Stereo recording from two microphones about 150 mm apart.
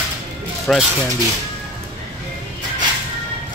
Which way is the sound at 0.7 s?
Centre (ahead or behind).